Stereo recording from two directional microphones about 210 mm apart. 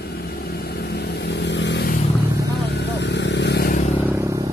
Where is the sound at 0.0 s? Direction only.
50° left (ahead or behind).